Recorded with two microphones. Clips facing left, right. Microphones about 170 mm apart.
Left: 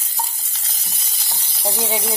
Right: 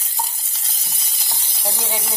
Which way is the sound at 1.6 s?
15° left (ahead or behind).